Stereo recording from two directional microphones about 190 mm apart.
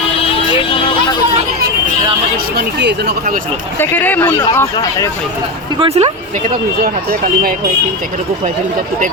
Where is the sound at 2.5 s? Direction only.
60° right (ahead or behind).